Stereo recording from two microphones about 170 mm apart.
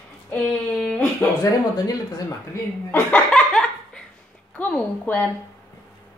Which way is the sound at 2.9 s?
10° left (ahead or behind).